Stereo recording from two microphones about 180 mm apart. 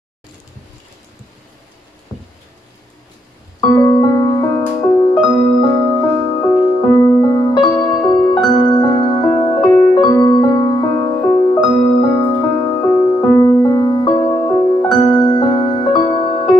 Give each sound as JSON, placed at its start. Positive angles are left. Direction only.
{"t": 2.1, "sound": "a sound", "side_deg": 20}
{"t": 3.7, "sound": "music", "side_deg": 20}
{"t": 9.7, "sound": "music", "side_deg": 15}